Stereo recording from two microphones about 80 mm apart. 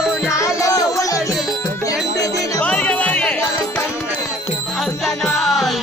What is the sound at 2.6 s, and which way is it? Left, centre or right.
Music, centre.